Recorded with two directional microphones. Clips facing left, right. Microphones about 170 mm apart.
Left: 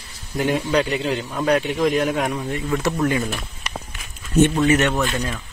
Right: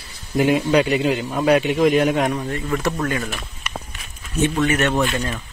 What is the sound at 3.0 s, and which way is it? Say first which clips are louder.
Speech: left 3 dB; 20° left (ahead or behind).